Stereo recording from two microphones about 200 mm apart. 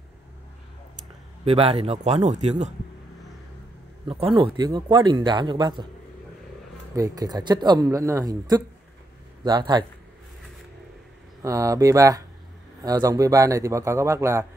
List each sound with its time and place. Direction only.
1.4 s speech: 30° right (ahead or behind)
4.1 s a man's voice: 25° right (ahead or behind)
7.0 s a man's voice: 20° right (ahead or behind)
11.4 s a man's voice: 15° right (ahead or behind)